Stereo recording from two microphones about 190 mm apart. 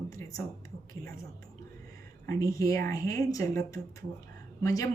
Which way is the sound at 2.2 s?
15° left (ahead or behind).